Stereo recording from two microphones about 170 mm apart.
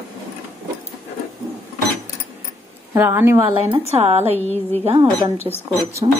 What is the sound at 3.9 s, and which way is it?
Speech, 40° right (ahead or behind).